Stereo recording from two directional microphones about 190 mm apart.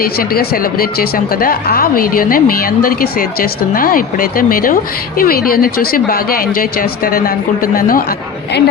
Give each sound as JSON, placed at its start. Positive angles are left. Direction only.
{"t": 0.0, "sound": "speech", "side_deg": 50}